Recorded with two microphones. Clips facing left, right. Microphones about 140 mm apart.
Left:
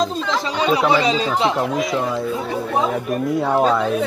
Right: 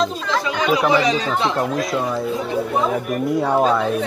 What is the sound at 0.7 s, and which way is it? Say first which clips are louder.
Speech: even; 25° left (ahead or behind).